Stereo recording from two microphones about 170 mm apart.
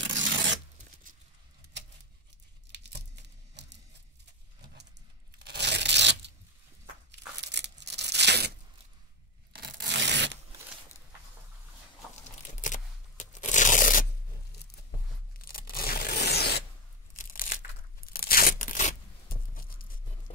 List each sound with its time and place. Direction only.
0.2 s zipper: 90° right
3.6 s a sound: 90° right
5.4 s tearing: 80° right
9.5 s a sound: 80° right
12.6 s tearing: 45° left (ahead or behind)
15.4 s tearing: 60° left (ahead or behind)
17.2 s tearing: 55° left (ahead or behind)